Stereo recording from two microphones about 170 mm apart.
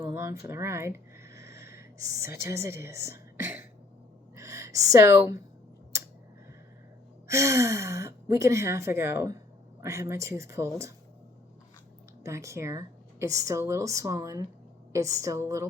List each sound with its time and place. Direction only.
0.0 s a sound: 15° right (ahead or behind)
1.7 s speech: 15° right (ahead or behind)
7.3 s speech: 15° right (ahead or behind)
12.2 s a woman's voice: 15° right (ahead or behind)